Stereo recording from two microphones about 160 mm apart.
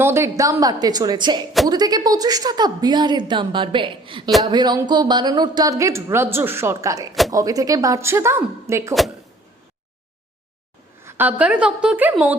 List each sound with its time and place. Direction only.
0.0 s a woman's voice: 15° right (ahead or behind)
11.0 s a woman's voice: 10° right (ahead or behind)